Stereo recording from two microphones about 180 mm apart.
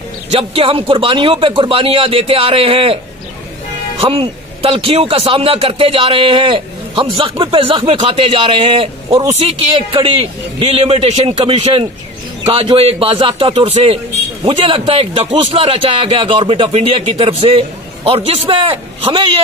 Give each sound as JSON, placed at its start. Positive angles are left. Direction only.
{"t": 0.3, "sound": "a man's voice", "side_deg": -30}
{"t": 4.0, "sound": "a man's voice", "side_deg": -30}